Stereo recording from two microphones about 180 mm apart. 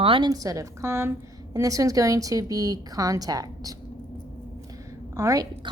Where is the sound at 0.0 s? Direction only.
25° right (ahead or behind).